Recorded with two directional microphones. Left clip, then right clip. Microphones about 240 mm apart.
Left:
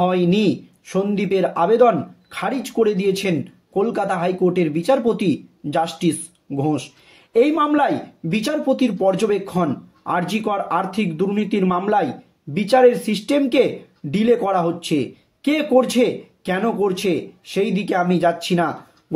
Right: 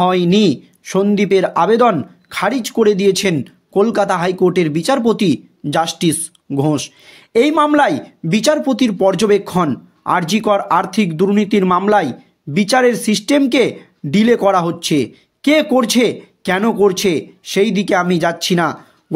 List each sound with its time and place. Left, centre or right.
0.0 s speech: right